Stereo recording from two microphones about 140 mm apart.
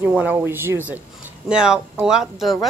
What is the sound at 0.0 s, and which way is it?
A woman's voice, 10° right (ahead or behind).